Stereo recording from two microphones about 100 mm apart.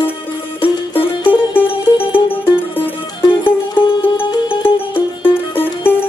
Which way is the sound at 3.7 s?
60° left (ahead or behind).